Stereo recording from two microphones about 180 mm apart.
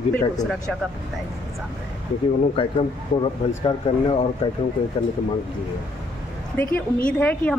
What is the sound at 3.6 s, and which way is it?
Speech, 30° left (ahead or behind).